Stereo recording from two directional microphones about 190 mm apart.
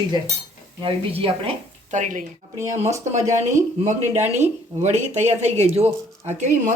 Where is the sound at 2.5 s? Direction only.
15° right (ahead or behind).